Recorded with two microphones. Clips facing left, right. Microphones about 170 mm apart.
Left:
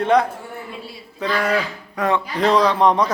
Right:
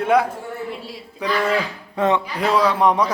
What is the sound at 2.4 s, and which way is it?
Speech, 5° right (ahead or behind).